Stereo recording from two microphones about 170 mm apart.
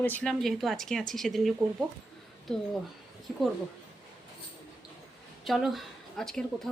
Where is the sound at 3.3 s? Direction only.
Centre (ahead or behind).